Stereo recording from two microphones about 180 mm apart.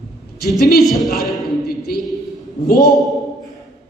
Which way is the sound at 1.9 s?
55° left (ahead or behind).